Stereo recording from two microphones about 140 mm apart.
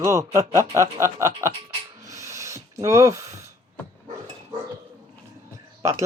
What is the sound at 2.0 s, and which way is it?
Rub, 20° right (ahead or behind).